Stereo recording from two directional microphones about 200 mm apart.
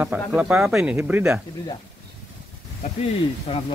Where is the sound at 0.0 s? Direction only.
5° right (ahead or behind).